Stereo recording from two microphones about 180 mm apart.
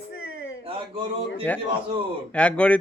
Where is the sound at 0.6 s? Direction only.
30° right (ahead or behind).